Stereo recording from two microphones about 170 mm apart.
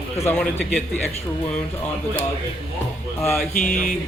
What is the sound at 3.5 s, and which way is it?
Mantra, 55° left (ahead or behind).